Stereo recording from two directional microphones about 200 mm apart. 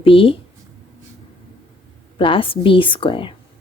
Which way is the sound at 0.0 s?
25° left (ahead or behind).